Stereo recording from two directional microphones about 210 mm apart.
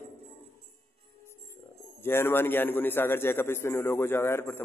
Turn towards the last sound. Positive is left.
turn(degrees=10)  # may be behind; listen again after turning